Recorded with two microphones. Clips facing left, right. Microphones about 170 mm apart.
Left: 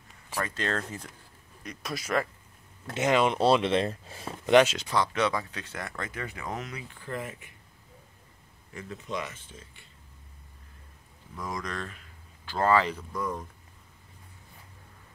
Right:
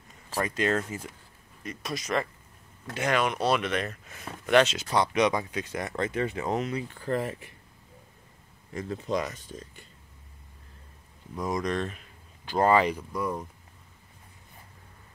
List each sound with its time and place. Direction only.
0.3 s speech: 15° right (ahead or behind); by 2.2 s 5° left (ahead or behind)
2.9 s speech: 20° left (ahead or behind)
4.8 s speech: 20° right (ahead or behind)
6.9 s speech: 40° right (ahead or behind)
8.7 s speech: 35° right (ahead or behind)
11.4 s speech: 20° right (ahead or behind)